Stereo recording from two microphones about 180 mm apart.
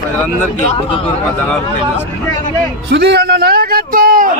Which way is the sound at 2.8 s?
65° right (ahead or behind).